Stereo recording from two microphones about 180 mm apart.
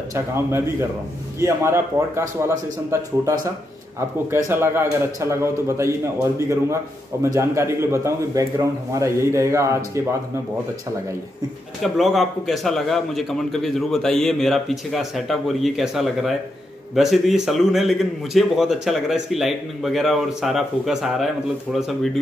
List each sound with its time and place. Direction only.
0.1 s a man's voice: 15° right (ahead or behind)
4.5 s a man's voice: 10° right (ahead or behind)
11.8 s a man's voice: centre (ahead or behind)